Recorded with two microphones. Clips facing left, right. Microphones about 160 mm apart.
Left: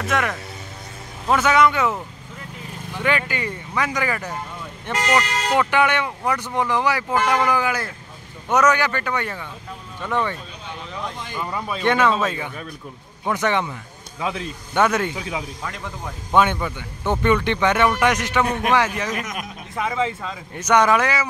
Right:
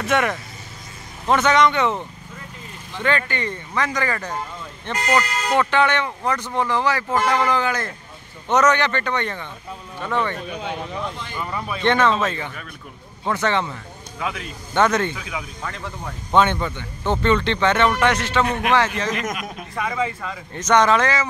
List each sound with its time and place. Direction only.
0.0 s speech: centre (ahead or behind)
3.0 s speech: 10° left (ahead or behind)
4.9 s speech: 80° left
5.5 s speech: 10° left (ahead or behind)
10.3 s speech: 65° right (ahead or behind)
11.8 s speech: 10° left (ahead or behind)
14.2 s speech: 25° left (ahead or behind)
14.7 s speech: 10° left (ahead or behind)
15.1 s speech: 30° left (ahead or behind)
16.3 s speech: 10° left (ahead or behind)
20.2 s speech: 10° left (ahead or behind)